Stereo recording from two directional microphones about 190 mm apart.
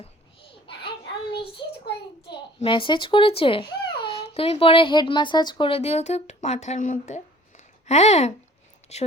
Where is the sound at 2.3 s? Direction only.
25° left (ahead or behind).